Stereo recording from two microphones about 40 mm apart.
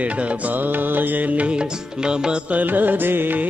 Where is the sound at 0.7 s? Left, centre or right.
Right.